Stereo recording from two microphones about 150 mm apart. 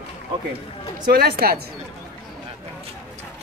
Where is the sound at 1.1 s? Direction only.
90° right.